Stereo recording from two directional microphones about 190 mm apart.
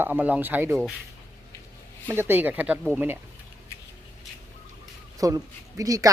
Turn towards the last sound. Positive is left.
turn(degrees=-20)  # may be behind; listen again after turning